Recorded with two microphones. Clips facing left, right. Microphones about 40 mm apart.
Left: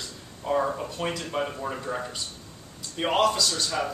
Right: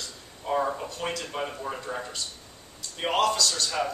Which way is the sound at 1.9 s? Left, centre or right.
Left.